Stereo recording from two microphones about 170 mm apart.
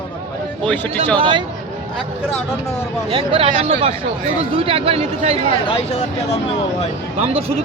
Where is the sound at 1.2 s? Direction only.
30° right (ahead or behind).